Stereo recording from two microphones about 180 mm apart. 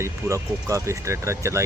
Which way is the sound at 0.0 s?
15° right (ahead or behind).